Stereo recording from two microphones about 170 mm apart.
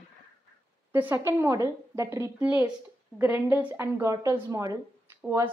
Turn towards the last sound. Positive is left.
turn(degrees=-15)  # may be behind; listen again after turning